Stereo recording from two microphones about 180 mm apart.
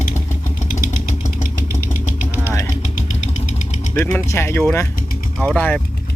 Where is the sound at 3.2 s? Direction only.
40° left (ahead or behind).